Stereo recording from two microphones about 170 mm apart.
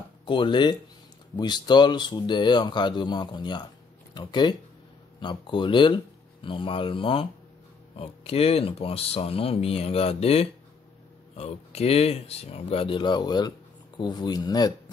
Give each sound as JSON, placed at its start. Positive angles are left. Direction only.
{"t": 0.2, "sound": "speech", "side_deg": 30}